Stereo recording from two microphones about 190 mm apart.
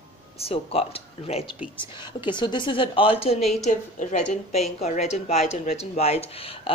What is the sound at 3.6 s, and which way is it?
A woman's voice, 40° left (ahead or behind).